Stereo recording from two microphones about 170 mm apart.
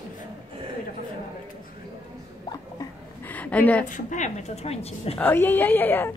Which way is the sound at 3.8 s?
50° left (ahead or behind).